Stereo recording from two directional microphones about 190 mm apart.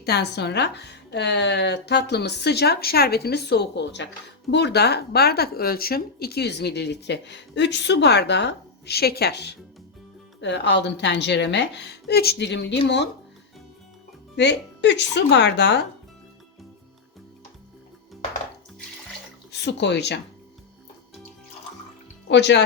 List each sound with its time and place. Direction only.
0.0 s speech: 60° left (ahead or behind)
14.3 s speech: 65° left (ahead or behind)
19.5 s speech: 60° left (ahead or behind)
22.3 s speech: 65° left (ahead or behind)